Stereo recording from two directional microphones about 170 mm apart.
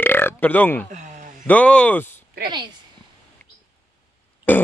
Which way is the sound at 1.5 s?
5° left (ahead or behind).